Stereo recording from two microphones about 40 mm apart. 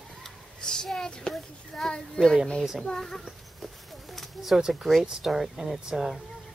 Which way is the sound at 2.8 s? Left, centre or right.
Centre.